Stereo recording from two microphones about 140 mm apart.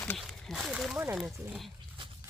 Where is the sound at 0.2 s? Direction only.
Centre (ahead or behind).